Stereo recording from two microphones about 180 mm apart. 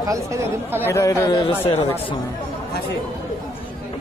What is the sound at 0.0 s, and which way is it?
Speech, 15° right (ahead or behind).